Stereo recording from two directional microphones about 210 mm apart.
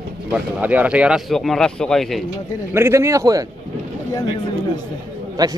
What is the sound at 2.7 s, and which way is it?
Speech, 10° right (ahead or behind).